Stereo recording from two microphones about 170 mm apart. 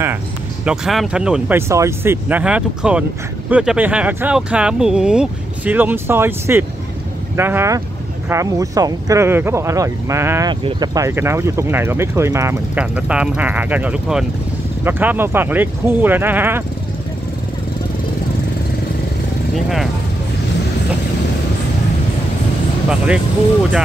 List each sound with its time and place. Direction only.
0.7 s speech: 5° right (ahead or behind)
1.7 s speech: 15° right (ahead or behind)
10.5 s speech: 25° right (ahead or behind)
19.5 s speech: centre (ahead or behind)
22.8 s speech: 5° right (ahead or behind)